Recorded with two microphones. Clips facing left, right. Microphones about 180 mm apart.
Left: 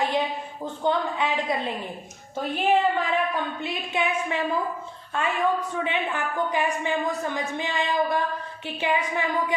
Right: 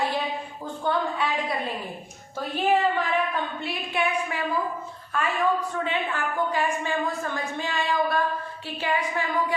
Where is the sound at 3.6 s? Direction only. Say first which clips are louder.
Even; 20° left (ahead or behind).